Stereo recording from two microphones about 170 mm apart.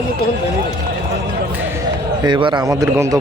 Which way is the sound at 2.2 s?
25° right (ahead or behind).